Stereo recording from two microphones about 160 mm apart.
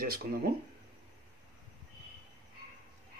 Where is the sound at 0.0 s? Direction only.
65° right (ahead or behind).